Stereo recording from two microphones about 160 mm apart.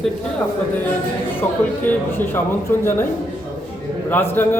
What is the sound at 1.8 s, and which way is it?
A man's voice, 15° left (ahead or behind).